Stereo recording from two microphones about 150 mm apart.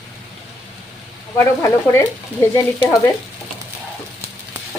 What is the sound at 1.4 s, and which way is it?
Speech, 20° left (ahead or behind).